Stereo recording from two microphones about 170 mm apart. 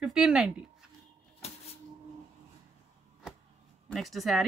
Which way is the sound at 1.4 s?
35° left (ahead or behind).